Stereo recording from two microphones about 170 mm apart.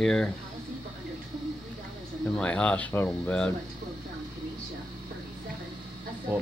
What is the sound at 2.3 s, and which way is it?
Speech, 5° left (ahead or behind).